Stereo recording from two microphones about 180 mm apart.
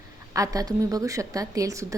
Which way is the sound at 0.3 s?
20° right (ahead or behind).